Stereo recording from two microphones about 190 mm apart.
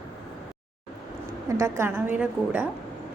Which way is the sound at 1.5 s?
15° right (ahead or behind).